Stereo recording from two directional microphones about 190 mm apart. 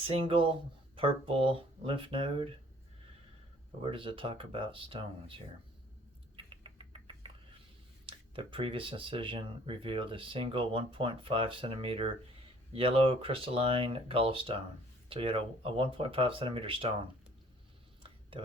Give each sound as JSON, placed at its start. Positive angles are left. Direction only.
{"t": 0.0, "sound": "speech", "side_deg": -30}
{"t": 3.8, "sound": "speech", "side_deg": -25}
{"t": 6.3, "sound": "rodents", "side_deg": -30}
{"t": 8.0, "sound": "speech", "side_deg": -25}
{"t": 18.0, "sound": "a sound", "side_deg": -30}